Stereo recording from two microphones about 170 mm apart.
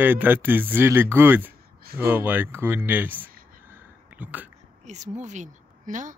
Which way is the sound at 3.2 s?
55° right (ahead or behind).